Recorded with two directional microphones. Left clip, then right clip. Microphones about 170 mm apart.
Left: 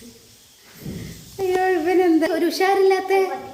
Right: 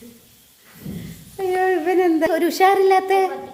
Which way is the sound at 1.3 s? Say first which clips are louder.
Even; 25° right (ahead or behind).